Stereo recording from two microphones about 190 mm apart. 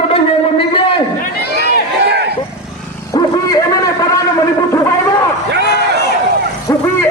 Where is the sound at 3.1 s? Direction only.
20° left (ahead or behind).